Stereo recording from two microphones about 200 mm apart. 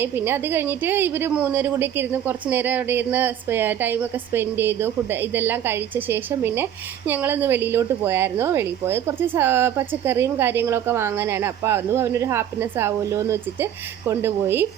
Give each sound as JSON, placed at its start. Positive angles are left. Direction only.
{"t": 0.0, "sound": "a woman's voice", "side_deg": -10}